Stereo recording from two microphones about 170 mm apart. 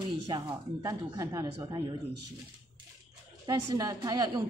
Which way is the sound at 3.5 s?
20° right (ahead or behind).